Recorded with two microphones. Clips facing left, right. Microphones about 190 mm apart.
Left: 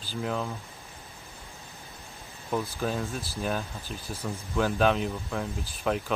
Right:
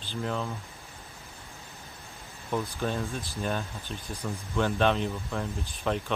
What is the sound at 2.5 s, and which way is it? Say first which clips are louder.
Speech: left 1 dB; 5° left (ahead or behind).